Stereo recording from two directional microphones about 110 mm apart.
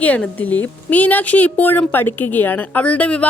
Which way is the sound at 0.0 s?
15° left (ahead or behind).